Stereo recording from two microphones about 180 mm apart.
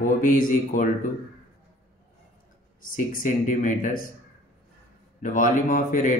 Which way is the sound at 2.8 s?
50° left (ahead or behind).